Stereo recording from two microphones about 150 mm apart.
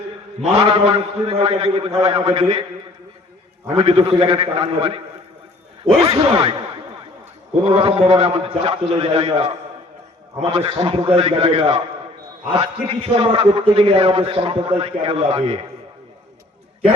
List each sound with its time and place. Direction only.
0.5 s a man's voice: 40° right (ahead or behind)
3.8 s a man's voice: 40° right (ahead or behind)
6.1 s a man's voice: 35° right (ahead or behind)
7.7 s a man's voice: 35° right (ahead or behind)